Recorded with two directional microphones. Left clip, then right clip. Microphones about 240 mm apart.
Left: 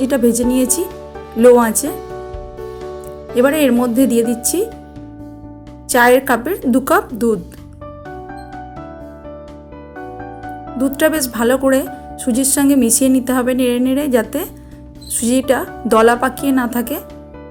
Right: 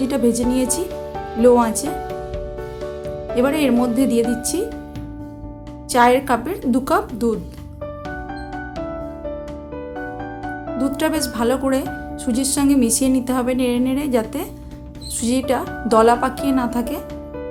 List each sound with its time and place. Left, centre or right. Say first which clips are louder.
0.0 s a woman's voice: left 4 dB; centre
3.3 s a woman's voice: left 5 dB; centre
5.9 s a woman's voice: left 3 dB; centre
10.8 s a woman's voice: left 6 dB; centre